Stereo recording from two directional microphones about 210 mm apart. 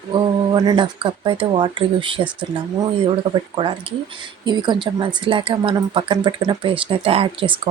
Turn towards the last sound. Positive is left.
turn(degrees=-25)  # may be behind; listen again after turning